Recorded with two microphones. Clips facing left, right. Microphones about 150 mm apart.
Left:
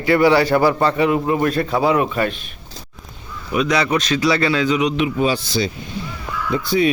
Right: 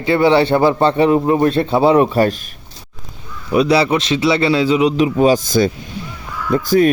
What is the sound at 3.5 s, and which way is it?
A man's voice, 30° right (ahead or behind).